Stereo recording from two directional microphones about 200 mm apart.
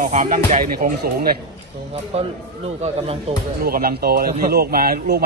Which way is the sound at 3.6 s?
50° right (ahead or behind).